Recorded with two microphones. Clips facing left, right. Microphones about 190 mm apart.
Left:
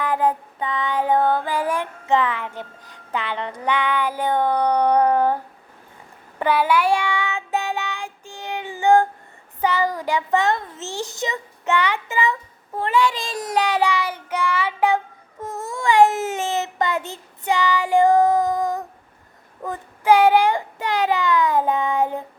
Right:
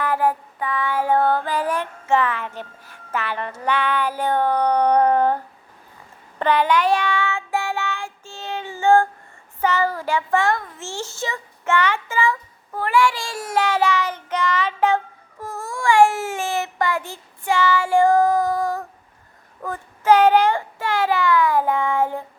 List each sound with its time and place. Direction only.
0.0 s child singing: 15° left (ahead or behind)
6.4 s child singing: 10° left (ahead or behind)
9.6 s a child's voice: 15° left (ahead or behind)
19.6 s child singing: 15° left (ahead or behind)